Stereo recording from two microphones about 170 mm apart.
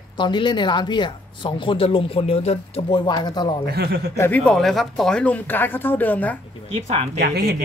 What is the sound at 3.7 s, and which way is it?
Speech, 70° right (ahead or behind).